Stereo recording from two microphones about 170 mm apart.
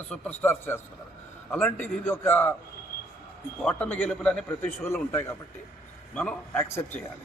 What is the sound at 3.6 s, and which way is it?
A man's voice, 10° left (ahead or behind).